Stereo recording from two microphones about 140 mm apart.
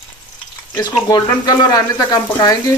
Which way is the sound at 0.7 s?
25° left (ahead or behind).